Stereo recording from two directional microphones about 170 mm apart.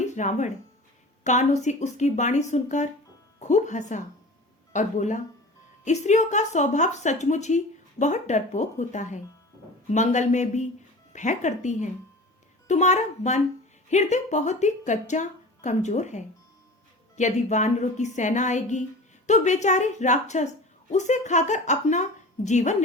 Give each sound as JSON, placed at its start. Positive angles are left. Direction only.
{"t": 0.0, "sound": "a woman's voice", "side_deg": 45}